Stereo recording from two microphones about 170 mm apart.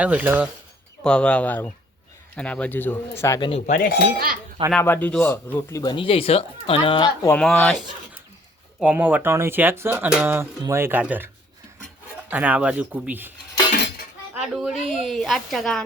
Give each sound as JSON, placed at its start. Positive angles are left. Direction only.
{"t": 0.0, "sound": "speech", "side_deg": -10}
{"t": 1.0, "sound": "speech", "side_deg": 5}
{"t": 3.7, "sound": "cutlery", "side_deg": 65}
{"t": 4.8, "sound": "speech", "side_deg": 10}
{"t": 7.3, "sound": "a woman's voice", "side_deg": 5}
{"t": 8.8, "sound": "speech", "side_deg": -5}
{"t": 12.3, "sound": "speech", "side_deg": -10}
{"t": 14.3, "sound": "a woman's voice", "side_deg": 0}